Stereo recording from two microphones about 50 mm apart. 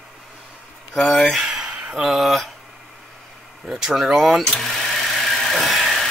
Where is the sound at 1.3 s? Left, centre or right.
Centre.